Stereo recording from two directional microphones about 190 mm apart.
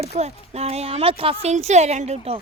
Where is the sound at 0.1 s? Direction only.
35° right (ahead or behind).